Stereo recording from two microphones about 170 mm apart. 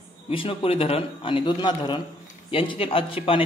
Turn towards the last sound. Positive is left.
turn(degrees=30)  # may be behind; listen again after turning